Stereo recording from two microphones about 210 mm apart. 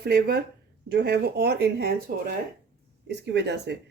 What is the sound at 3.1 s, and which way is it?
Speech, 55° right (ahead or behind).